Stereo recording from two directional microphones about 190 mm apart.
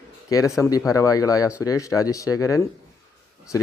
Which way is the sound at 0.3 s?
15° left (ahead or behind).